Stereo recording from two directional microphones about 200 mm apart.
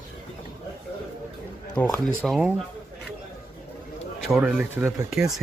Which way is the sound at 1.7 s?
5° left (ahead or behind).